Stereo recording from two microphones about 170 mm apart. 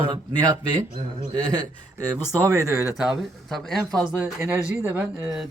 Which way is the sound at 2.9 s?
5° right (ahead or behind).